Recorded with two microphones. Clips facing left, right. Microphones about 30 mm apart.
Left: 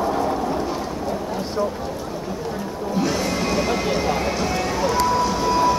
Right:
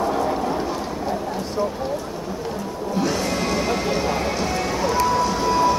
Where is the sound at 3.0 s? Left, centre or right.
Centre.